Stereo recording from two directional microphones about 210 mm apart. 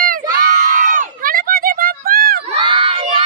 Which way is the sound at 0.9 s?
40° right (ahead or behind).